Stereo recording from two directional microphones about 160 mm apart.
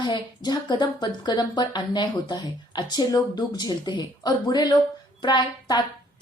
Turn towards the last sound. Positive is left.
turn(degrees=25)  # may be behind; listen again after turning